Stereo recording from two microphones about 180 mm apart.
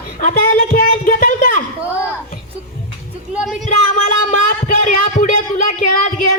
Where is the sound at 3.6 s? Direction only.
40° left (ahead or behind).